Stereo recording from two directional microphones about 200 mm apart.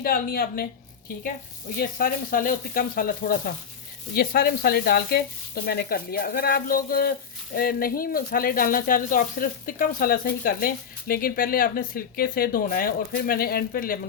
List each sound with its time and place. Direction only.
0.0 s speech: 50° left (ahead or behind)
1.7 s speech: 45° left (ahead or behind)